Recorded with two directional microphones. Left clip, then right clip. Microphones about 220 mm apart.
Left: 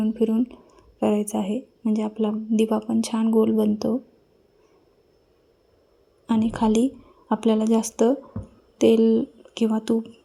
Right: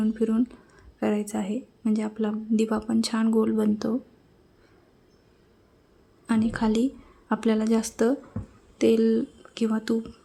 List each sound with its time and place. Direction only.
0.0 s speech: 5° left (ahead or behind)
6.2 s a woman's voice: 5° left (ahead or behind)